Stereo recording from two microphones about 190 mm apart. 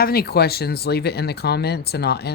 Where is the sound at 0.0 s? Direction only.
55° left (ahead or behind).